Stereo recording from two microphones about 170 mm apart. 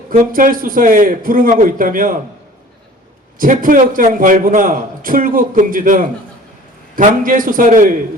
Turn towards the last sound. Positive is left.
turn(degrees=-55)  # may be behind; listen again after turning